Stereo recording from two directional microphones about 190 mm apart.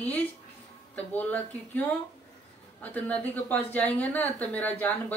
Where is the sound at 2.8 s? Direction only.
10° left (ahead or behind).